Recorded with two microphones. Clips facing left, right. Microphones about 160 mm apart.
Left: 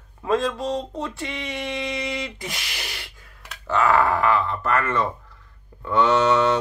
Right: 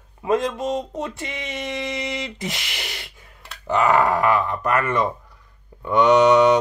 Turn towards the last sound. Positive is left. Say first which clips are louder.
# right 5 dB
turn(degrees=-15)  # may be behind; listen again after turning